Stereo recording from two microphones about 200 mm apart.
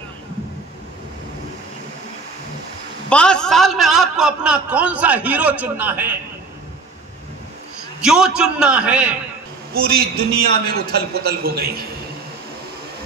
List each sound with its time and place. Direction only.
3.1 s a man's voice: 5° left (ahead or behind)
8.0 s a man's voice: 5° right (ahead or behind)
9.8 s a man's voice: 50° right (ahead or behind)